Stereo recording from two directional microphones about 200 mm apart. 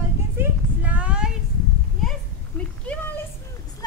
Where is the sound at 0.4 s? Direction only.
5° right (ahead or behind).